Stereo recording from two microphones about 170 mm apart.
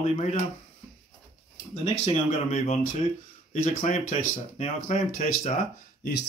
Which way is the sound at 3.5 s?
50° left (ahead or behind).